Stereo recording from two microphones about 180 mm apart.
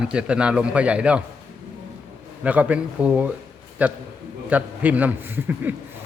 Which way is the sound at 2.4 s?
10° right (ahead or behind).